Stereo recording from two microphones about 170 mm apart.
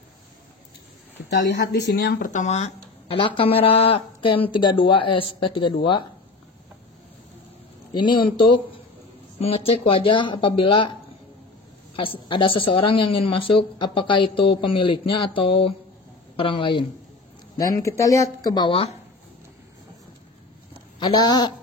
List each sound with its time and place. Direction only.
1.3 s speech: 85° left; by 5.8 s 30° left (ahead or behind)
7.9 s speech: 25° left (ahead or behind)
11.9 s speech: 30° left (ahead or behind)
17.7 s speech: 15° left (ahead or behind); by 18.9 s 35° left (ahead or behind)
21.0 s speech: 25° left (ahead or behind)